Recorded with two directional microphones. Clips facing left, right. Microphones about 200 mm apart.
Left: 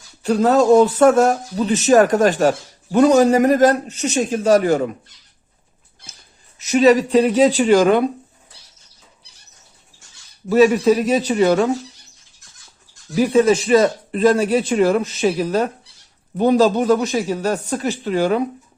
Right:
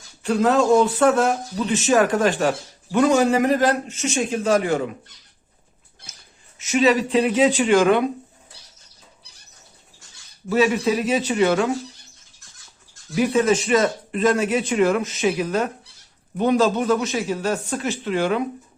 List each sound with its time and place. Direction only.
0.2 s speech: 40° left (ahead or behind)
6.6 s speech: 40° left (ahead or behind)
10.5 s speech: 40° left (ahead or behind)
13.1 s speech: 35° left (ahead or behind)